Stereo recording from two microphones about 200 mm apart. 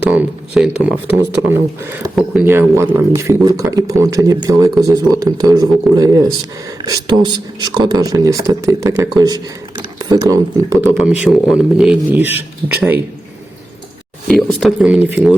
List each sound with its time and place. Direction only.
0.0 s speech: 10° right (ahead or behind)
14.3 s speech: centre (ahead or behind)